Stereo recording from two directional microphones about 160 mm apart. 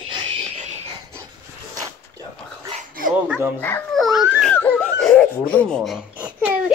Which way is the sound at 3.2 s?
10° right (ahead or behind).